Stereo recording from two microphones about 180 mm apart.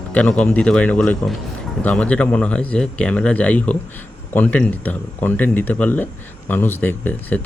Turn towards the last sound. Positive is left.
turn(degrees=10)  # may be behind; listen again after turning